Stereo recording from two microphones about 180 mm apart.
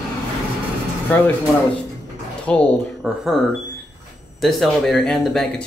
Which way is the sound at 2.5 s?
5° left (ahead or behind).